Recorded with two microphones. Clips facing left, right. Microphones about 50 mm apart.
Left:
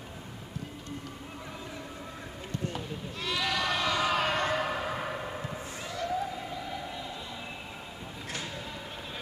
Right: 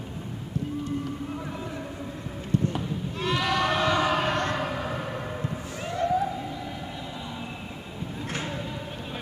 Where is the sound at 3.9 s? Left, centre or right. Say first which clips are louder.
Right 4 dB; centre.